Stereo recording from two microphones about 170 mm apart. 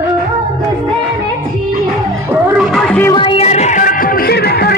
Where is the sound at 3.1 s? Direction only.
30° left (ahead or behind); by 4.7 s 65° left (ahead or behind).